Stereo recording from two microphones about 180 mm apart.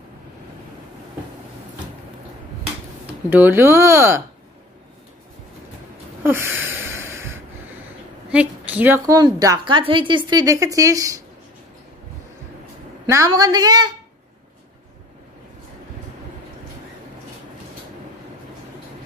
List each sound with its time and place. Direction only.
3.3 s speech: 10° right (ahead or behind)
6.2 s a sound: 15° right (ahead or behind)
8.3 s a woman's voice: 5° right (ahead or behind)
13.0 s a woman's voice: 20° right (ahead or behind)